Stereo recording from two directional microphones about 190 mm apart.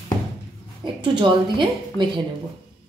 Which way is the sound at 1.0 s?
25° right (ahead or behind).